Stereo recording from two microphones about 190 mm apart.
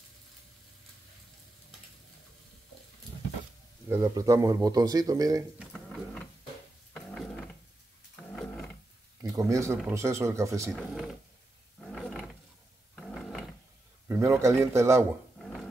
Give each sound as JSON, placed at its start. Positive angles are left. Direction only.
{"t": 3.9, "sound": "speech", "side_deg": -15}
{"t": 5.6, "sound": "a sound", "side_deg": 0}
{"t": 6.9, "sound": "wood", "side_deg": 5}
{"t": 8.4, "sound": "a sound", "side_deg": 5}
{"t": 9.2, "sound": "a man's voice", "side_deg": -15}
{"t": 10.7, "sound": "speech", "side_deg": 0}
{"t": 11.8, "sound": "roar", "side_deg": 0}
{"t": 12.9, "sound": "a sound", "side_deg": 5}
{"t": 14.0, "sound": "a man's voice", "side_deg": -10}
{"t": 15.4, "sound": "music", "side_deg": 0}